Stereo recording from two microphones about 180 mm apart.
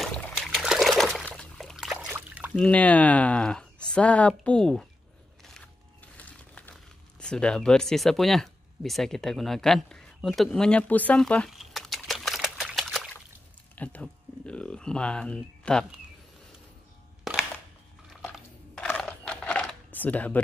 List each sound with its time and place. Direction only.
0.0 s trickle: centre (ahead or behind)
2.1 s splash: 10° right (ahead or behind)
2.6 s speech: 5° left (ahead or behind)
6.1 s crumpling: 10° left (ahead or behind)
13.7 s speech: 5° left (ahead or behind)
18.8 s a sound: 10° left (ahead or behind)